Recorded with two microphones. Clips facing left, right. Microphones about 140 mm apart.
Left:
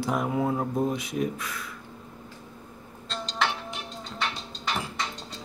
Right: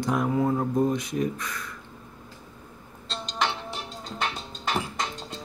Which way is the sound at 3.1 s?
20° right (ahead or behind).